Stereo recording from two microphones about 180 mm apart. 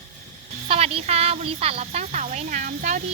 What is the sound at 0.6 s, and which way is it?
Speech, 35° right (ahead or behind).